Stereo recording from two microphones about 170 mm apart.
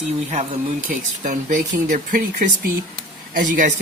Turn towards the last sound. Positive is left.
turn(degrees=-50)  # may be behind; listen again after turning